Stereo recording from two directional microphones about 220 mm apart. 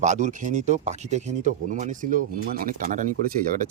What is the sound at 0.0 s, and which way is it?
Speech, 35° right (ahead or behind).